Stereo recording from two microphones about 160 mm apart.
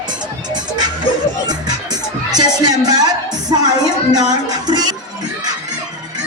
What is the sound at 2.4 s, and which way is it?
Music, 25° right (ahead or behind).